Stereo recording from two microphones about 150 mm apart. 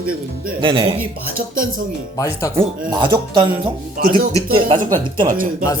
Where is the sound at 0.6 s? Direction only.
35° right (ahead or behind).